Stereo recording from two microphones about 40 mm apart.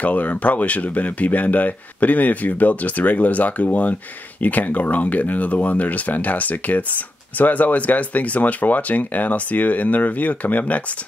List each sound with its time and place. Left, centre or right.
0.0 s speech: left